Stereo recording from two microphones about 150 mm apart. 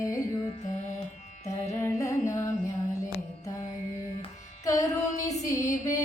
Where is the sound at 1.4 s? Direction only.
20° left (ahead or behind).